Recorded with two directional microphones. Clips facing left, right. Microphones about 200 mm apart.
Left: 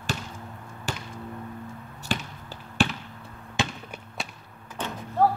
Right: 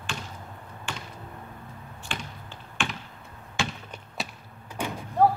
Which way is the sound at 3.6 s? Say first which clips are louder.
Left 2 dB; 20° left (ahead or behind).